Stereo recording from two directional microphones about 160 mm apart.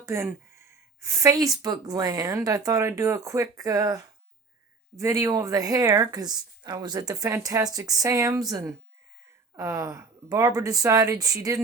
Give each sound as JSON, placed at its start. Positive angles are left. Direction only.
{"t": 0.0, "sound": "speech", "side_deg": -15}